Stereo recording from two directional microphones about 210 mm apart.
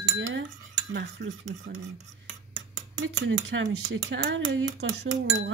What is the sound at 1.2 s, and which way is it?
Speech, 55° right (ahead or behind).